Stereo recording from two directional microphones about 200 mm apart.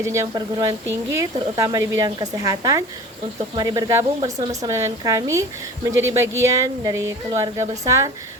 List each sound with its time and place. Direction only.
0.0 s speech: 15° right (ahead or behind)